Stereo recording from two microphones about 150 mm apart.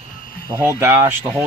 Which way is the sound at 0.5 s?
15° right (ahead or behind).